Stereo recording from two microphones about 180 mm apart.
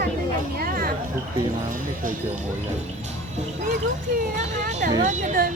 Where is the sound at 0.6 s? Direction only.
55° right (ahead or behind).